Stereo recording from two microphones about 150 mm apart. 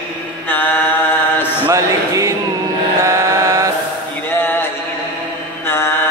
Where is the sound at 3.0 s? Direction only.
20° right (ahead or behind).